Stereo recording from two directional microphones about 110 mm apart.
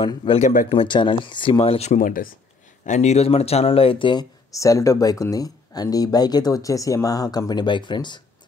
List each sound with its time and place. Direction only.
0.0 s speech: 50° left (ahead or behind); by 2.0 s 70° left (ahead or behind)
2.9 s speech: 90° left; by 4.3 s 45° left (ahead or behind)
4.5 s speech: 30° left (ahead or behind)